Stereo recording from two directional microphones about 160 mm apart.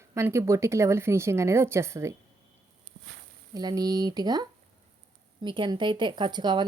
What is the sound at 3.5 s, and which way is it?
A woman's voice, 25° right (ahead or behind).